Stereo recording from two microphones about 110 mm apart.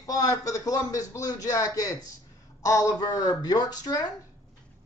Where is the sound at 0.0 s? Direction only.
35° left (ahead or behind).